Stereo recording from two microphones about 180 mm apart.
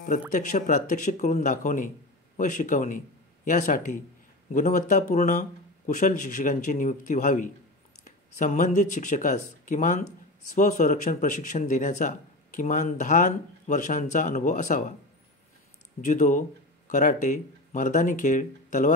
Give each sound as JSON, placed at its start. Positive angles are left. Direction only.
{"t": 0.3, "sound": "speech", "side_deg": 45}
{"t": 16.1, "sound": "speech", "side_deg": 45}